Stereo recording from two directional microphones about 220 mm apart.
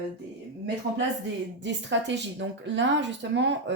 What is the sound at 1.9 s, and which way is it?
A woman's voice, 55° right (ahead or behind).